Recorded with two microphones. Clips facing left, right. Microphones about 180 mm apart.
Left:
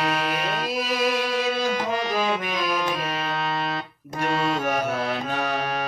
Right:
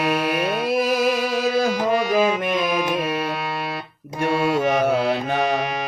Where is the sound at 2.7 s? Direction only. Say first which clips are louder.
Right 5 dB; 10° right (ahead or behind).